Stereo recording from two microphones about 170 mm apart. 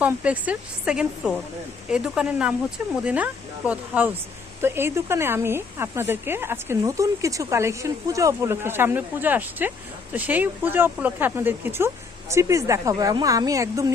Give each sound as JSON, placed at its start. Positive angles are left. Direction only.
{"t": 0.0, "sound": "a woman's voice", "side_deg": -10}